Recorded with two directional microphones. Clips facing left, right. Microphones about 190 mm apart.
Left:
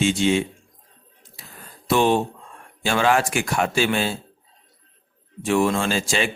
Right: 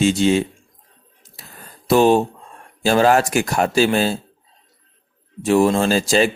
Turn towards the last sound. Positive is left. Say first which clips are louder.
# right 7 dB
turn(degrees=-40)  # may be behind; listen again after turning